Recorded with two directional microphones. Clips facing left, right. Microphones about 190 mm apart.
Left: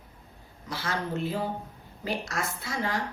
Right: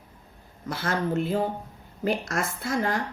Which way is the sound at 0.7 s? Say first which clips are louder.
Right 5 dB; 50° right (ahead or behind).